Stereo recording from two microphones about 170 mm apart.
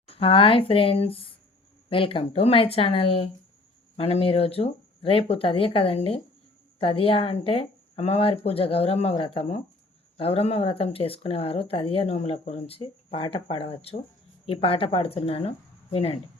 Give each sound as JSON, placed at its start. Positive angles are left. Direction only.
{"t": 0.1, "sound": "speech", "side_deg": 30}